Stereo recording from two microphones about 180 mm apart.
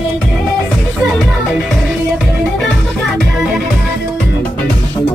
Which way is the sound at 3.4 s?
Centre (ahead or behind).